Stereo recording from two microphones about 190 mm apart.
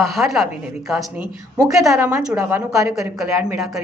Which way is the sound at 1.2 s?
20° right (ahead or behind).